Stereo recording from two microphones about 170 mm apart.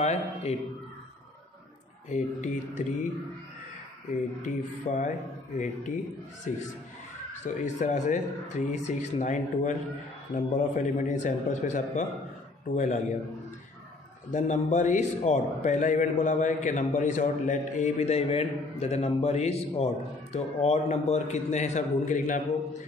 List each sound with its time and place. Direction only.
0.0 s a man's voice: 40° left (ahead or behind)
2.0 s a man's voice: 45° left (ahead or behind)
4.4 s a man's voice: 45° left (ahead or behind)
6.5 s a man's voice: 50° left (ahead or behind)
7.6 s a man's voice: 45° left (ahead or behind)
14.3 s a man's voice: 45° left (ahead or behind)